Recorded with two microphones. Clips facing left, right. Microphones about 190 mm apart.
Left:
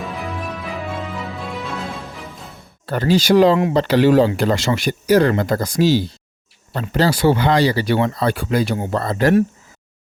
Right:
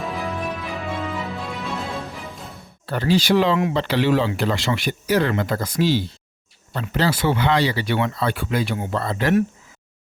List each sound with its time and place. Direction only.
0.0 s music: centre (ahead or behind)
2.8 s speech: 45° left (ahead or behind)